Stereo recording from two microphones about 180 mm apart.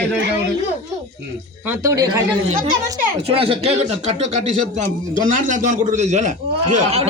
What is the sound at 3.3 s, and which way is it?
A man's voice, 30° right (ahead or behind).